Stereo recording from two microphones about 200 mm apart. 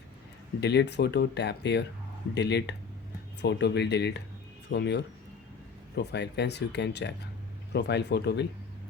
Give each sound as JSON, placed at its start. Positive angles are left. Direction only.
{"t": 0.6, "sound": "speech", "side_deg": 55}